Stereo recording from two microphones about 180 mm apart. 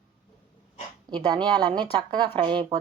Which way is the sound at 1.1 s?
25° right (ahead or behind).